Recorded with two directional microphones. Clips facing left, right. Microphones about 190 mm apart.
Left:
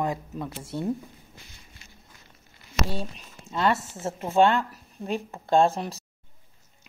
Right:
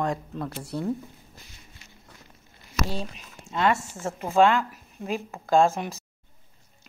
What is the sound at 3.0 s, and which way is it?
Speech, centre (ahead or behind).